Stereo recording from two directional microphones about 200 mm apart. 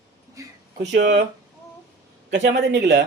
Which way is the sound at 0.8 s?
55° right (ahead or behind).